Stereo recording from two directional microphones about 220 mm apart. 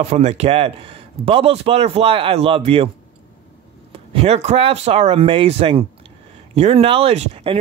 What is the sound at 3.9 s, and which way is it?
A man's voice, 25° right (ahead or behind).